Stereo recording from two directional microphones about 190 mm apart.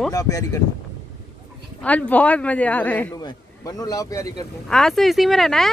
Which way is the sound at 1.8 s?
10° left (ahead or behind).